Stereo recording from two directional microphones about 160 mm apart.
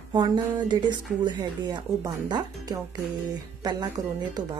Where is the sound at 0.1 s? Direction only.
25° right (ahead or behind).